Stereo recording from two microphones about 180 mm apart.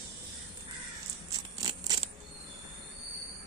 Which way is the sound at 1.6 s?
20° right (ahead or behind).